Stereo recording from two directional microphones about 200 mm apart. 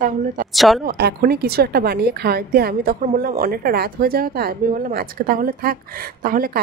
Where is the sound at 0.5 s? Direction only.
Centre (ahead or behind).